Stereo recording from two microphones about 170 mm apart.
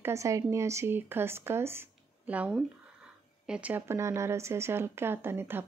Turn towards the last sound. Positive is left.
turn(degrees=-15)  # may be behind; listen again after turning